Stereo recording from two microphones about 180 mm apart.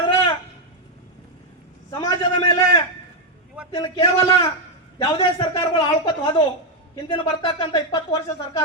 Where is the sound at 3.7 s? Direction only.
20° left (ahead or behind).